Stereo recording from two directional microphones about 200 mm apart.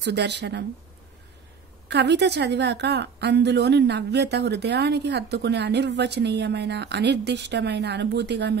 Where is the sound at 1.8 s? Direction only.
60° right (ahead or behind).